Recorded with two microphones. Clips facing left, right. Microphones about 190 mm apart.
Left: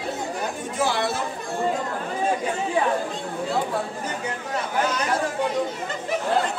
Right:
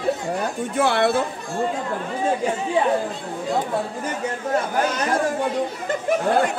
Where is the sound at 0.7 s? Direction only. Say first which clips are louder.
Right 5 dB; 60° right (ahead or behind).